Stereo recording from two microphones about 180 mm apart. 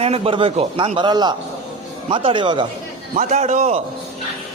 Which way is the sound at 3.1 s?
40° right (ahead or behind).